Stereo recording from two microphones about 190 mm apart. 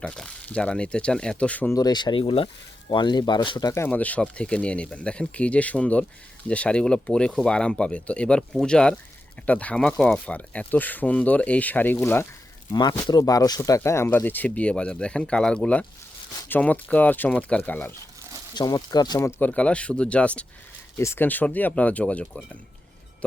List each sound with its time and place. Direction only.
0.0 s speech: 5° left (ahead or behind)
1.7 s speech: 20° left (ahead or behind)
19.4 s speech: 5° left (ahead or behind)